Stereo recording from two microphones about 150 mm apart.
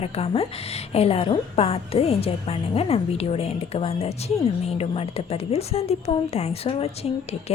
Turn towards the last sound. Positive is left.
turn(degrees=40)  # may be behind; listen again after turning